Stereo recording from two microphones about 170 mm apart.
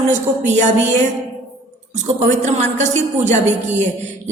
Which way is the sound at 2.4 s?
45° right (ahead or behind).